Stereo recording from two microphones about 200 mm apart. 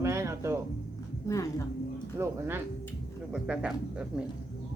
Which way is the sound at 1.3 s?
15° left (ahead or behind).